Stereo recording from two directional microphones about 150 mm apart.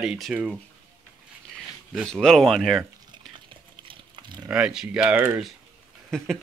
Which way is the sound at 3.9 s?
30° right (ahead or behind).